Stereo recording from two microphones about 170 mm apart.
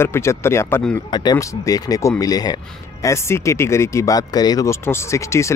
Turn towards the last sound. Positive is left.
turn(degrees=15)  # may be behind; listen again after turning